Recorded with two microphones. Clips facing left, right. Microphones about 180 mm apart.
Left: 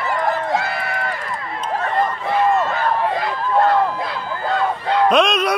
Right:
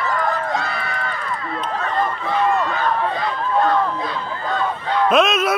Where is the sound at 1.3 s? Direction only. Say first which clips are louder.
Even; 45° left (ahead or behind).